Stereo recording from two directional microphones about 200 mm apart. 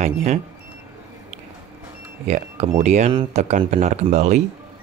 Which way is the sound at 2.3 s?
35° right (ahead or behind).